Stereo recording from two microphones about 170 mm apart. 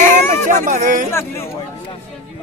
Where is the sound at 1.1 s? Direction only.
15° left (ahead or behind).